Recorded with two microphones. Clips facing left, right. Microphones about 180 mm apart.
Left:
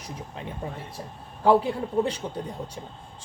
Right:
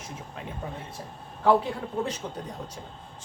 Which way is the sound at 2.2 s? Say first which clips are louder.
Left 3 dB; 25° left (ahead or behind).